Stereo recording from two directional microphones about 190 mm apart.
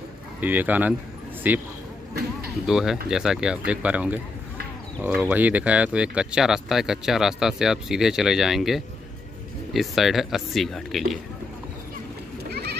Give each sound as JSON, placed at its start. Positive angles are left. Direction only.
{"t": 0.4, "sound": "speech", "side_deg": -10}
{"t": 12.4, "sound": "goat", "side_deg": -55}